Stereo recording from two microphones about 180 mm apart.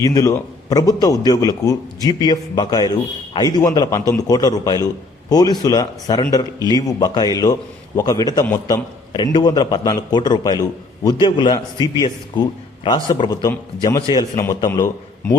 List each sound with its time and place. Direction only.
0.0 s a man's voice: 20° left (ahead or behind)